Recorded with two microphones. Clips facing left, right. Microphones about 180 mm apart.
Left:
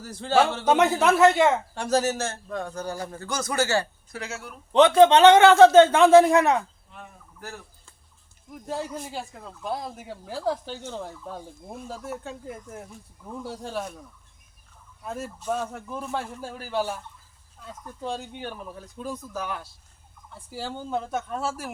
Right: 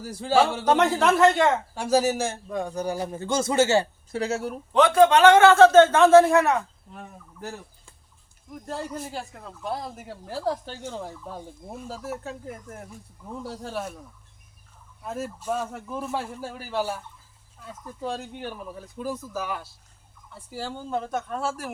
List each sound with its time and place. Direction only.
0.0 s a man's voice: 10° right (ahead or behind)
0.6 s a man's voice: 5° left (ahead or behind)
1.7 s a man's voice: 10° right (ahead or behind); by 4.2 s 25° right (ahead or behind)
4.2 s speech: 35° right (ahead or behind)
4.7 s a man's voice: 25° left (ahead or behind)
6.9 s a sound: 35° right (ahead or behind)
8.6 s speech: centre (ahead or behind)
15.0 s speech: centre (ahead or behind)